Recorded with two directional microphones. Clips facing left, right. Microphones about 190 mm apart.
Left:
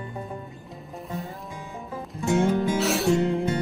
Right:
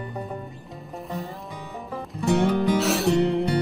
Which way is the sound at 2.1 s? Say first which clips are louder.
Right 1 dB; 65° right (ahead or behind).